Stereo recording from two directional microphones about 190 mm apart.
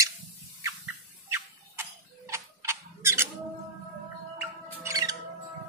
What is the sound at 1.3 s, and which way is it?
Tick-tock, 15° right (ahead or behind).